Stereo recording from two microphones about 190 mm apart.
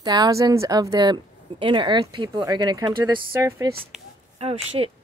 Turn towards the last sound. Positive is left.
turn(degrees=-30)  # may be behind; listen again after turning